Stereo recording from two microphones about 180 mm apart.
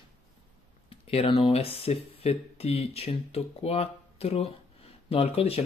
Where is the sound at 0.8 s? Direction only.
30° left (ahead or behind).